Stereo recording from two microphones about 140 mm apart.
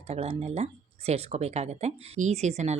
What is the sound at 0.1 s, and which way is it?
Speech, 50° right (ahead or behind).